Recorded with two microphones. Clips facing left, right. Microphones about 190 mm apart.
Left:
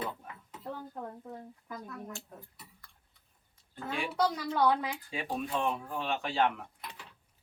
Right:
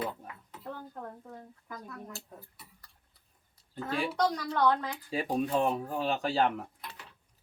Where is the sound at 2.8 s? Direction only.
35° right (ahead or behind).